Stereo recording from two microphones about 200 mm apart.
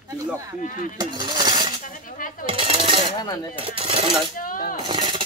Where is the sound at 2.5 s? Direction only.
25° right (ahead or behind).